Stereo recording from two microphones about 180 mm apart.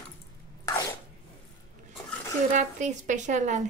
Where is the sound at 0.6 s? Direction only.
15° left (ahead or behind).